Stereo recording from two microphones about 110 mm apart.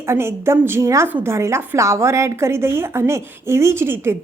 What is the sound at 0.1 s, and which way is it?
A woman's voice, 25° right (ahead or behind).